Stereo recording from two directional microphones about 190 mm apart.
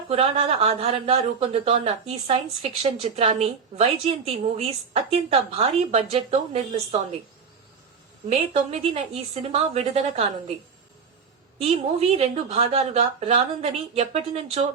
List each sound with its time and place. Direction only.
0.1 s speech: 30° right (ahead or behind)
8.3 s speech: 35° right (ahead or behind)
11.6 s speech: 35° right (ahead or behind)